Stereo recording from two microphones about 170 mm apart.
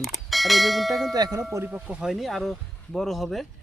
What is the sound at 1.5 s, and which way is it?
Speech, 5° right (ahead or behind).